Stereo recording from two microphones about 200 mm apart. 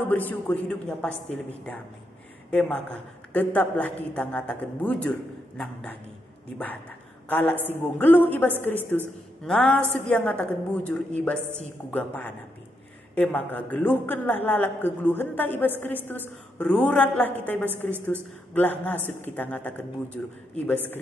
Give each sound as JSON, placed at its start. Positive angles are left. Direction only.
{"t": 0.1, "sound": "a woman's voice", "side_deg": 10}
{"t": 7.2, "sound": "a man's voice", "side_deg": 10}